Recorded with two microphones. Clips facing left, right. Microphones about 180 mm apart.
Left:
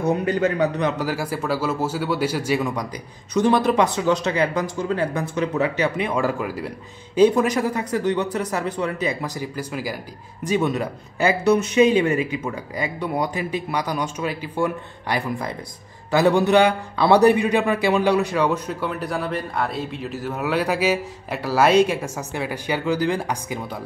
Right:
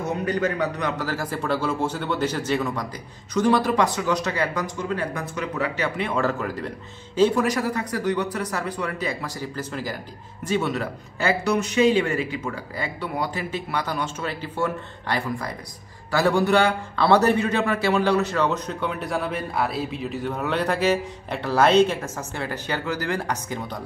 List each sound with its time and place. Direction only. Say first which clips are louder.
0.2 s a man's voice: left 3 dB; 25° left (ahead or behind)